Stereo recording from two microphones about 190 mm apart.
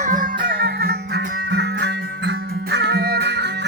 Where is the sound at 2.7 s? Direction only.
60° right (ahead or behind).